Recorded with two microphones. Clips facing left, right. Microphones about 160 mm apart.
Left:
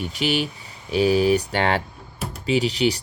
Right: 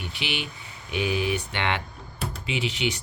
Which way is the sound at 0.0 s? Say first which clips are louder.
Left 9 dB; 40° left (ahead or behind).